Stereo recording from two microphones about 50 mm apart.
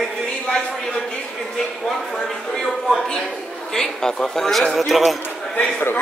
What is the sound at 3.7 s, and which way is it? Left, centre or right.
A man's voice, centre.